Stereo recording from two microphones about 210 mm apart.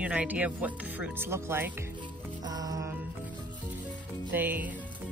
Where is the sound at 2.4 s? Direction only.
20° right (ahead or behind).